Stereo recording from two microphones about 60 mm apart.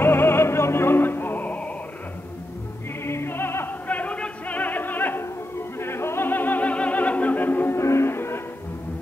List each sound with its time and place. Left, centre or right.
0.0 s opera: left
3.1 s music: left
3.8 s music: left
7.8 s music: left